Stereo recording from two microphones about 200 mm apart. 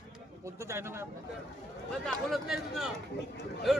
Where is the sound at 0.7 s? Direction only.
10° right (ahead or behind).